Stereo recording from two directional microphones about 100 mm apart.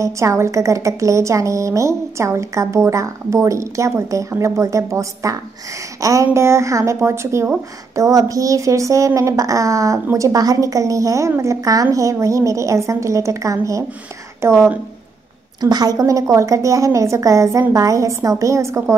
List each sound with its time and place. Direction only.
0.0 s a woman's voice: 30° right (ahead or behind)
15.6 s a woman's voice: 40° right (ahead or behind)